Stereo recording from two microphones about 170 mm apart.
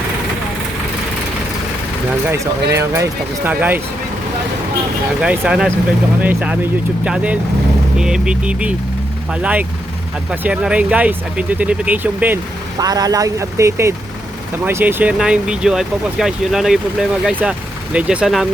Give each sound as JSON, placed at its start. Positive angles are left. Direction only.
{"t": 2.2, "sound": "speech", "side_deg": -15}
{"t": 5.2, "sound": "speech", "side_deg": -5}
{"t": 12.8, "sound": "speech", "side_deg": -20}